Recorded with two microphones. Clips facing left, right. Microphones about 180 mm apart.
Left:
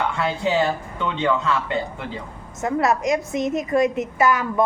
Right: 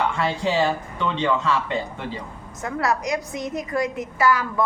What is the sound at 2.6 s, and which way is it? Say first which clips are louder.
A woman's voice: left 4 dB; 20° left (ahead or behind).